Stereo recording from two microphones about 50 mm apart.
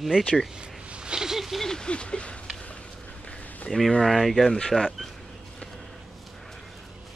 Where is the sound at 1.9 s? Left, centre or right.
Left.